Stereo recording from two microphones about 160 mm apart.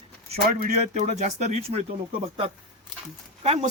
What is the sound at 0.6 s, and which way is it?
Speech, 45° right (ahead or behind).